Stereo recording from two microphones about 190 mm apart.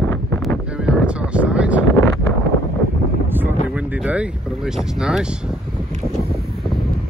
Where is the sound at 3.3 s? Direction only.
10° right (ahead or behind).